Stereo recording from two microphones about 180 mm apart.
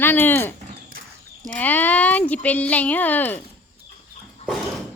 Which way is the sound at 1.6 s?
10° left (ahead or behind).